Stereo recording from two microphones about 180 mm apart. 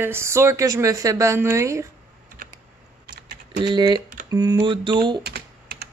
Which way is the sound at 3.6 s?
25° right (ahead or behind).